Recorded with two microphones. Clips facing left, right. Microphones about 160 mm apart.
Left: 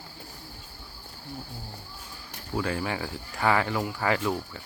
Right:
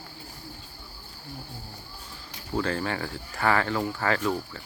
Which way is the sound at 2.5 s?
10° left (ahead or behind).